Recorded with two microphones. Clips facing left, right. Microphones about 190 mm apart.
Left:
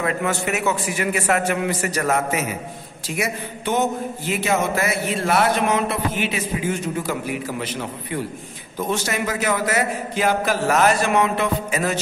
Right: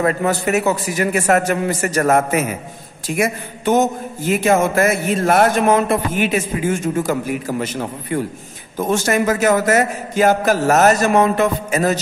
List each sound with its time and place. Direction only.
0.0 s a man's voice: 40° right (ahead or behind)